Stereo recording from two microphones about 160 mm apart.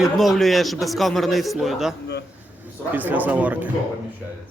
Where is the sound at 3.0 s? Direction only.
10° right (ahead or behind).